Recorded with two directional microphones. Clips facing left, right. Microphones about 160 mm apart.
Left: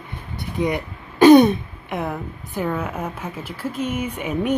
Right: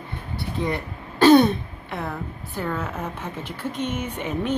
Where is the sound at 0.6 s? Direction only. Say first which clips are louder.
Left 5 dB; 15° left (ahead or behind).